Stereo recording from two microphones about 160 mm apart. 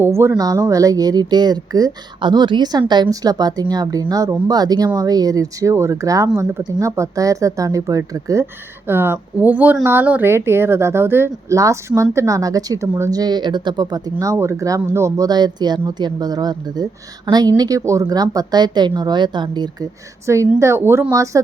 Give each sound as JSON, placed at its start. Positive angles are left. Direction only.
{"t": 0.0, "sound": "speech", "side_deg": -15}